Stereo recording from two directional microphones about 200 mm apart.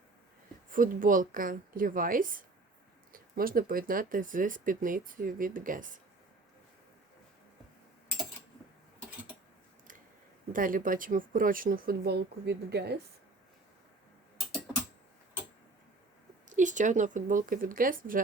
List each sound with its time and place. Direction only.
0.7 s speech: 45° right (ahead or behind)
10.5 s speech: 45° right (ahead or behind)
16.5 s speech: 40° right (ahead or behind)